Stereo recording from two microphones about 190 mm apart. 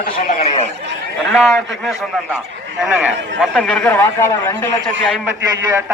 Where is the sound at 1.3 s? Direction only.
Centre (ahead or behind).